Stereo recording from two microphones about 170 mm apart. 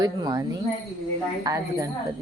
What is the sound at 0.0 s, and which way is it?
Speech, 25° right (ahead or behind).